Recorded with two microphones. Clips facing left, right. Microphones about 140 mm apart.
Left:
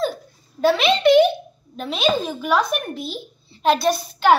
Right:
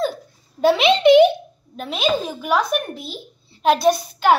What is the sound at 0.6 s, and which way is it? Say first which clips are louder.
Speech: right 2 dB; 20° right (ahead or behind).